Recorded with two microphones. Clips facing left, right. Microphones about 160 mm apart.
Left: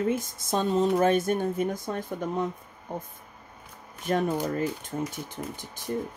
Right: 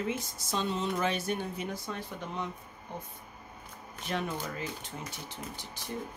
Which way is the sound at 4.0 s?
45° left (ahead or behind).